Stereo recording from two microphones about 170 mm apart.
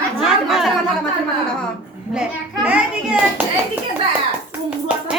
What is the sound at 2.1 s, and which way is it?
A child's voice, 5° right (ahead or behind).